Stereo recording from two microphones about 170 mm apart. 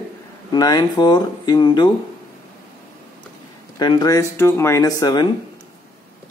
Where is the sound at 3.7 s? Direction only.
25° left (ahead or behind).